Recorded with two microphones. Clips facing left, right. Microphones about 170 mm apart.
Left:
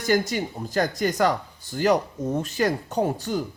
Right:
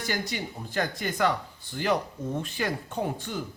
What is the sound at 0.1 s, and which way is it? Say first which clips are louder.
Speech: left 11 dB; 45° left (ahead or behind).